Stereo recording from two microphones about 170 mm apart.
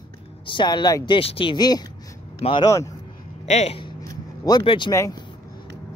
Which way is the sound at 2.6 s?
20° left (ahead or behind).